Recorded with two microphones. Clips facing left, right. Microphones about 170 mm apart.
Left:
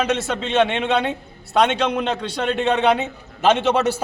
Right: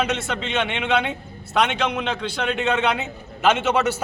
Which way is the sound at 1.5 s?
35° left (ahead or behind).